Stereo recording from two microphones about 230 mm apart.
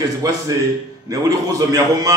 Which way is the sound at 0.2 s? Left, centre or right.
Centre.